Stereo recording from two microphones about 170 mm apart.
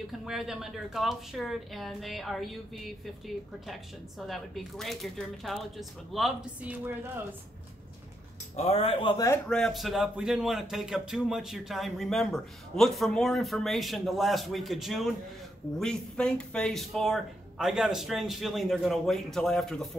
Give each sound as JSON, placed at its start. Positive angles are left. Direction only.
{"t": 0.2, "sound": "speech", "side_deg": 0}
{"t": 4.3, "sound": "speech", "side_deg": 0}
{"t": 8.5, "sound": "speech", "side_deg": 35}
{"t": 9.5, "sound": "speech", "side_deg": 0}